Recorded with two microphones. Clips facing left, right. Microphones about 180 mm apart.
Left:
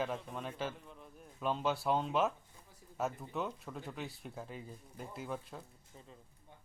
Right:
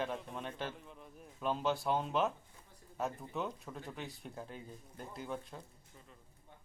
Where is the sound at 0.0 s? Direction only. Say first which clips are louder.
Left 1 dB; centre (ahead or behind).